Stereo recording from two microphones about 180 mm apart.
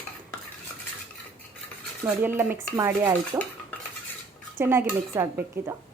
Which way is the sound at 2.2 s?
10° right (ahead or behind).